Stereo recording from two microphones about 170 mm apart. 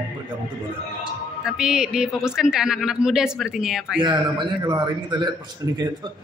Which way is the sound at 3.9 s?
30° right (ahead or behind).